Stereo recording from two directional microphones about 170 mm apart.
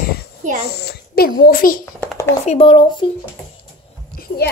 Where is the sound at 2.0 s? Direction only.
15° left (ahead or behind).